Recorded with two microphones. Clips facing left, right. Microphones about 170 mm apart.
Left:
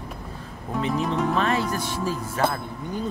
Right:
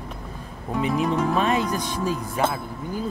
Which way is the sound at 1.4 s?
15° right (ahead or behind).